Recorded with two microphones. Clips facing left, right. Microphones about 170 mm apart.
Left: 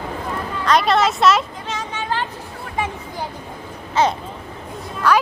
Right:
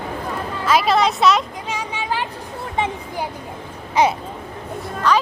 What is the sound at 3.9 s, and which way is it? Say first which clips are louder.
Babbling: right 1 dB; 15° right (ahead or behind).